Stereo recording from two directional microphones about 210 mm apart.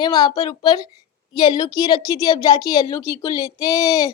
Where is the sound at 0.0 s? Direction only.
20° left (ahead or behind).